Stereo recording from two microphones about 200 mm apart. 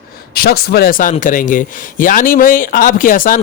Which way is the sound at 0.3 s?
50° left (ahead or behind).